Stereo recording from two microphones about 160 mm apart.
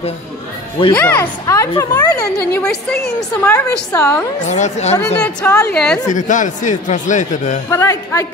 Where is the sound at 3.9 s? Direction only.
20° left (ahead or behind).